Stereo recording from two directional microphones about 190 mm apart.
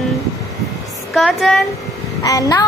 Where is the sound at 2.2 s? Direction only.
20° left (ahead or behind).